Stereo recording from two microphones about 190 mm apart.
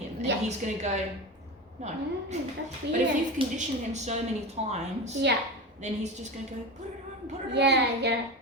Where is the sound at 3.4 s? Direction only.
30° right (ahead or behind).